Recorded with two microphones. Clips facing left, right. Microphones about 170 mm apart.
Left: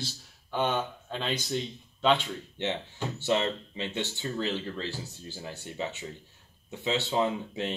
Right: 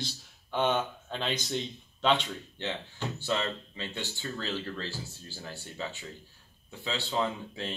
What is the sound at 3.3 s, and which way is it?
Speech, 20° left (ahead or behind).